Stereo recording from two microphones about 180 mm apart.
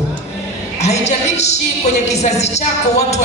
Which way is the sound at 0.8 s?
40° left (ahead or behind).